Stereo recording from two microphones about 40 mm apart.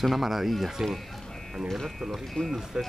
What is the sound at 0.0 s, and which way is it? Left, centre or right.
Speech, centre.